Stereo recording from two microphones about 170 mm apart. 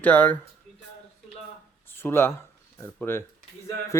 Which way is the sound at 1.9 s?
15° left (ahead or behind).